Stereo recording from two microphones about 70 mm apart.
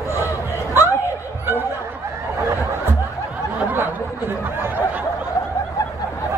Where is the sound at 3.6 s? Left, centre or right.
Right.